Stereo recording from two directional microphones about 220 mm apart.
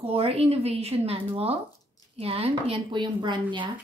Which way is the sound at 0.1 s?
25° right (ahead or behind).